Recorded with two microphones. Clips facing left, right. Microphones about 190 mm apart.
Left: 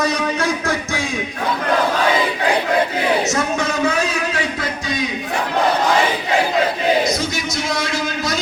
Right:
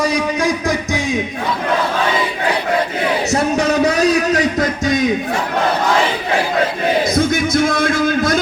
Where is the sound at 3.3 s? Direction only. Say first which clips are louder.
Right 5 dB; 35° right (ahead or behind).